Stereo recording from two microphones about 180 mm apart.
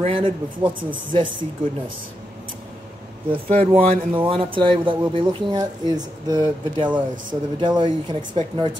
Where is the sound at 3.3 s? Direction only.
30° right (ahead or behind).